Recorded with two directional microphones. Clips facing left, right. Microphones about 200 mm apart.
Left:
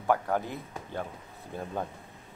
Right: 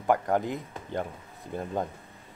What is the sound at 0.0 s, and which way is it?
Speech, 15° right (ahead or behind).